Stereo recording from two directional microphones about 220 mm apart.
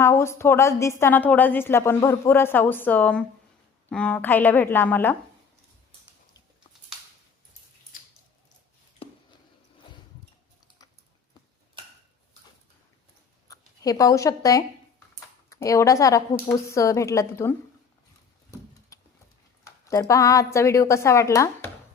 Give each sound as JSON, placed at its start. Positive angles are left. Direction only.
{"t": 0.0, "sound": "a woman's voice", "side_deg": 10}
{"t": 7.9, "sound": "squish", "side_deg": 40}
{"t": 13.5, "sound": "a woman's voice", "side_deg": 15}
{"t": 18.9, "sound": "a sound", "side_deg": 15}
{"t": 19.6, "sound": "a woman's voice", "side_deg": 15}